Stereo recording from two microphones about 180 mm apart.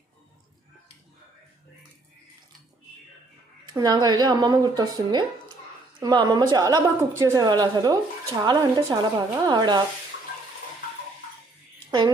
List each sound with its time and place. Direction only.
3.7 s a woman's voice: 25° right (ahead or behind)
11.9 s a woman's voice: 20° right (ahead or behind)